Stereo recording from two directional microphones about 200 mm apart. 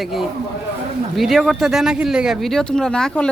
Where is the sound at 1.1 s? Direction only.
Centre (ahead or behind).